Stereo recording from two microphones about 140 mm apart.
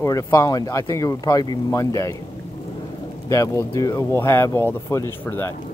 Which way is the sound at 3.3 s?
20° left (ahead or behind).